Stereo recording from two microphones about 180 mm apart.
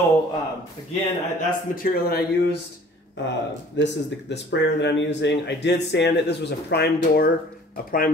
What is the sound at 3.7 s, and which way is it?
Speech, 75° left (ahead or behind).